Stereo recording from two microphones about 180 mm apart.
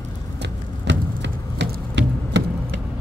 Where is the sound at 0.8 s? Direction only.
80° right.